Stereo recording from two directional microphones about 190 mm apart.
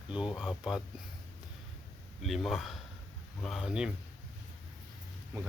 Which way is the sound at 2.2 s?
Centre (ahead or behind).